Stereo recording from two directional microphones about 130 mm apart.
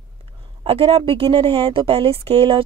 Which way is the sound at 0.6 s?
50° right (ahead or behind).